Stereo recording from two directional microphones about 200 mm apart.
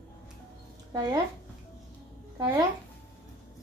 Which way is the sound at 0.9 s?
20° right (ahead or behind).